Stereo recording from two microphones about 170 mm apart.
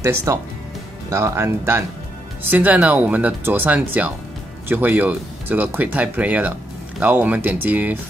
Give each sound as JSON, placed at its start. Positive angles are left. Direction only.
{"t": 0.0, "sound": "speech", "side_deg": -15}